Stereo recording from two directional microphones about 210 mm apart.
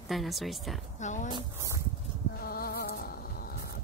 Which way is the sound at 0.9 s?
35° left (ahead or behind).